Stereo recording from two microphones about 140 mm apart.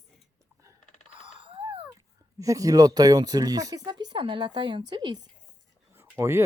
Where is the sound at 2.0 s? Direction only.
25° right (ahead or behind).